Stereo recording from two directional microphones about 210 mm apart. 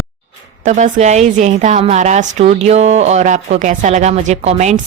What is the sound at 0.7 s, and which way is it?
A woman's voice, 35° right (ahead or behind).